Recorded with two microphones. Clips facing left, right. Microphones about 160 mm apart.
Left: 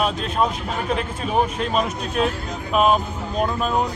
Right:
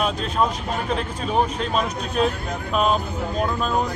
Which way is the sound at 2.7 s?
5° left (ahead or behind).